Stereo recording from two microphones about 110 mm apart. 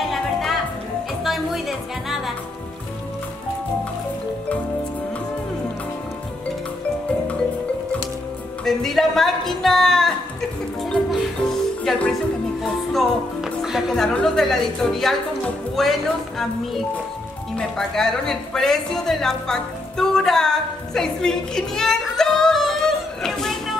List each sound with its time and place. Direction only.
0.1 s music: centre (ahead or behind)
8.6 s speech: 5° left (ahead or behind)
10.8 s music: centre (ahead or behind)
12.6 s speech: centre (ahead or behind)